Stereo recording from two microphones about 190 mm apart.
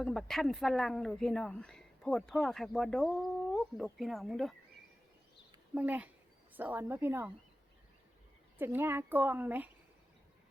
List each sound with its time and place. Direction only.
0.0 s speech: centre (ahead or behind)
5.7 s a woman's voice: 10° right (ahead or behind)
8.5 s a woman's voice: 10° right (ahead or behind)